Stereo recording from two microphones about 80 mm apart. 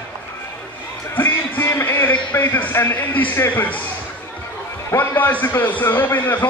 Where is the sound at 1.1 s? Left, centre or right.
Left.